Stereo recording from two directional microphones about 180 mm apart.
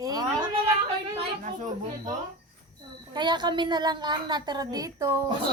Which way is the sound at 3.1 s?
25° right (ahead or behind).